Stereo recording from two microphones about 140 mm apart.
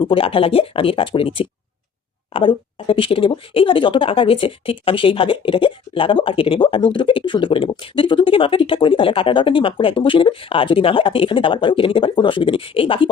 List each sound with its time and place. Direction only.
0.0 s speech: 40° left (ahead or behind)